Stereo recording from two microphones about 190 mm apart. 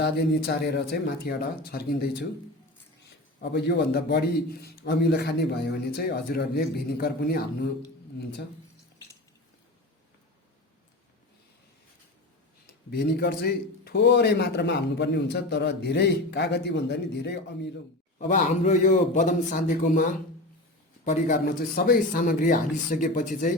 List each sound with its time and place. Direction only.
0.0 s a man's voice: 60° left (ahead or behind)
3.4 s a man's voice: 60° left (ahead or behind)
12.9 s a man's voice: 55° left (ahead or behind)
18.2 s speech: 40° left (ahead or behind)